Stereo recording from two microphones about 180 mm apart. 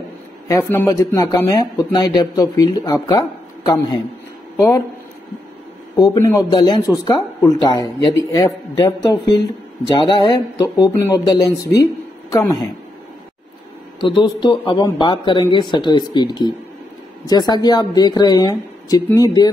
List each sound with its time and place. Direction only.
0.5 s speech: 15° left (ahead or behind)
5.9 s speech: 20° left (ahead or behind)
14.0 s speech: 25° left (ahead or behind)